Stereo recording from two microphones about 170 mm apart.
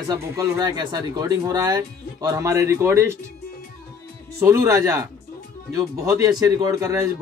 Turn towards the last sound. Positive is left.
turn(degrees=-20)  # may be behind; listen again after turning